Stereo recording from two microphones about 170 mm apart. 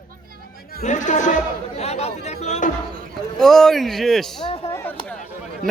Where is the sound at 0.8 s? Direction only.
45° left (ahead or behind).